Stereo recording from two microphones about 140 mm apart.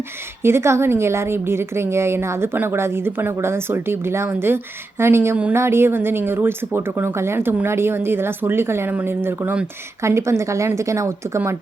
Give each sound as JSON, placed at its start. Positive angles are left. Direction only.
{"t": 0.4, "sound": "a woman's voice", "side_deg": -20}